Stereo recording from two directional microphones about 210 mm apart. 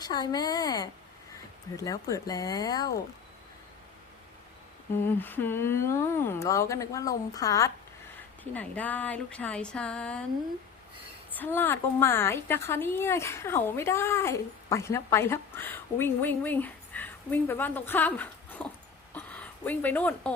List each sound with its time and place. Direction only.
0.0 s a woman's voice: 20° left (ahead or behind)
4.9 s a woman's voice: 10° left (ahead or behind)
11.3 s a woman's voice: 10° left (ahead or behind)